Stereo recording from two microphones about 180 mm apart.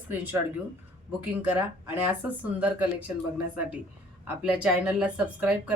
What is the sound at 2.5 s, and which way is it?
Speech, 10° right (ahead or behind).